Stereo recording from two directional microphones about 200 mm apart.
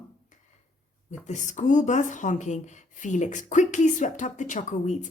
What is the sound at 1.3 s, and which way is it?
Speech, 40° left (ahead or behind).